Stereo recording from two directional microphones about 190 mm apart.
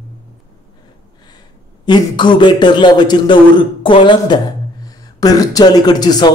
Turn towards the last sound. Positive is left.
turn(degrees=20)  # may be behind; listen again after turning